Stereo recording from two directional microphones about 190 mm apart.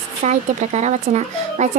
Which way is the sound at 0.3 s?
35° right (ahead or behind).